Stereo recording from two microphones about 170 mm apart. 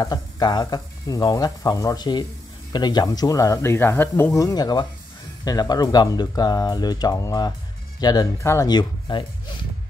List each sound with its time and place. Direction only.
0.0 s speech: 25° left (ahead or behind)